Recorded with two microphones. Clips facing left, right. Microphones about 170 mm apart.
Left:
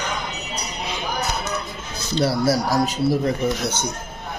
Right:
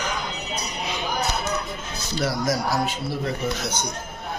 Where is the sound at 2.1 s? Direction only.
30° left (ahead or behind).